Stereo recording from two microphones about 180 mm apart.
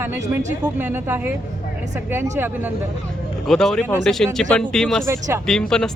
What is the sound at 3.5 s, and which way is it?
Speech, 5° left (ahead or behind).